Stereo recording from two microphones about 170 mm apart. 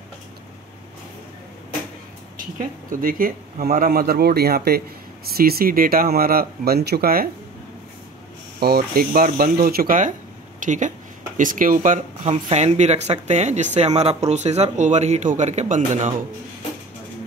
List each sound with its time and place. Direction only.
2.3 s speech: 50° right (ahead or behind)
8.5 s speech: 65° right (ahead or behind); by 16.1 s 45° right (ahead or behind)